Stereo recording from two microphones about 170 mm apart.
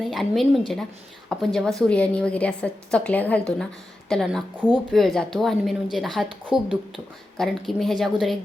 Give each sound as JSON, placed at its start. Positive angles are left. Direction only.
{"t": 0.0, "sound": "a woman's voice", "side_deg": 0}